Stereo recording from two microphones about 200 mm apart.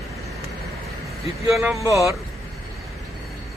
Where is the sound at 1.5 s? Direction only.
15° right (ahead or behind).